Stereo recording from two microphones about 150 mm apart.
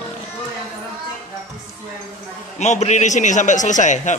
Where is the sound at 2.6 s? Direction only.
50° left (ahead or behind).